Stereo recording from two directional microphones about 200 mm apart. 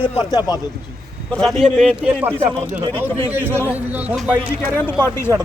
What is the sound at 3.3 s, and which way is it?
A man's voice, 10° right (ahead or behind).